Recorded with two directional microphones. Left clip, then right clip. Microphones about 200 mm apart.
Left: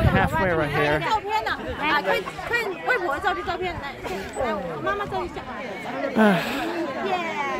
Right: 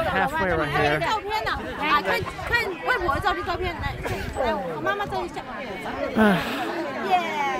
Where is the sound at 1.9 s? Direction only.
35° right (ahead or behind).